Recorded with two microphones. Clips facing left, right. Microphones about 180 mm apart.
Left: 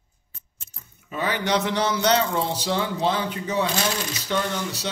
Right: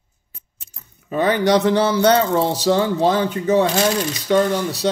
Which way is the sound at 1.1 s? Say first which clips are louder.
Right 9 dB; 35° right (ahead or behind).